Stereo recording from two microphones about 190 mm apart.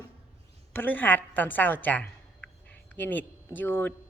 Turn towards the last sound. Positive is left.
turn(degrees=10)  # may be behind; listen again after turning